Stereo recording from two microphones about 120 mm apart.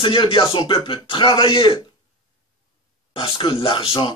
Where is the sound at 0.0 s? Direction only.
45° left (ahead or behind).